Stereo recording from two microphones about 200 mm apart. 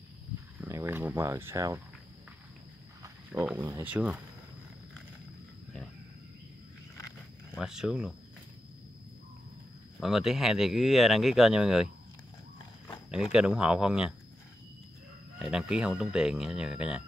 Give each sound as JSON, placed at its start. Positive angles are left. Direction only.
{"t": 0.6, "sound": "speech", "side_deg": -10}
{"t": 3.0, "sound": "speech", "side_deg": -10}
{"t": 7.5, "sound": "speech", "side_deg": -5}
{"t": 9.9, "sound": "speech", "side_deg": 0}
{"t": 13.1, "sound": "speech", "side_deg": -5}
{"t": 15.3, "sound": "speech", "side_deg": 0}